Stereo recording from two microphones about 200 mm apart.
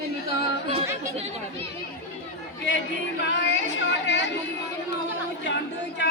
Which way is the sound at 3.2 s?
60° left (ahead or behind).